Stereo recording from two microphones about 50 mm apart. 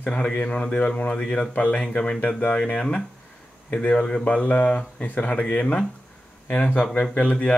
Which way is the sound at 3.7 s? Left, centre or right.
Left.